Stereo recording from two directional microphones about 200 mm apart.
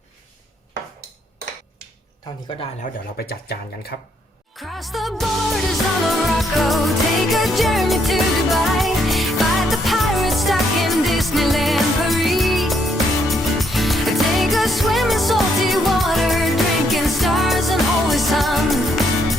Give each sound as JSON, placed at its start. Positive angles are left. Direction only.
{"t": 3.2, "sound": "speech", "side_deg": 50}
{"t": 4.5, "sound": "music", "side_deg": 0}